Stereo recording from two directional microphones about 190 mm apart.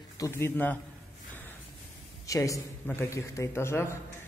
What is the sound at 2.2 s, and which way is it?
Speech, 15° left (ahead or behind).